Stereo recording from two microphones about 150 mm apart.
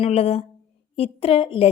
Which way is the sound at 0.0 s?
40° left (ahead or behind).